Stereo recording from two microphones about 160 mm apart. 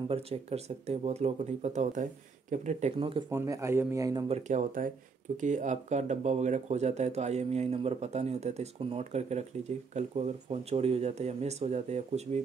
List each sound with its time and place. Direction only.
0.1 s speech: 40° right (ahead or behind)
3.0 s speech: 30° right (ahead or behind)
3.3 s speech: 20° right (ahead or behind)
4.3 s speech: 50° right (ahead or behind)